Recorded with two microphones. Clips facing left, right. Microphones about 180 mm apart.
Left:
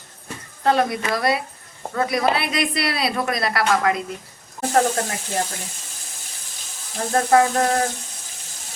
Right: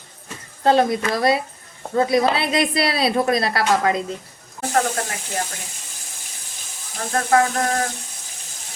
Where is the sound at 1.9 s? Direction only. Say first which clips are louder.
Right 3 dB; 25° right (ahead or behind).